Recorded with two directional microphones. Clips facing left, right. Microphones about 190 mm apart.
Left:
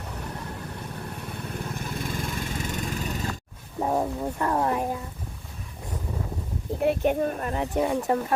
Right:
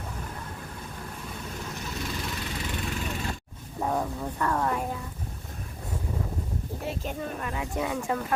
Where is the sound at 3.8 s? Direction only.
20° left (ahead or behind).